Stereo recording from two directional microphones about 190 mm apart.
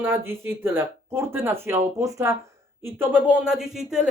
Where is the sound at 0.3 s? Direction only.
10° right (ahead or behind).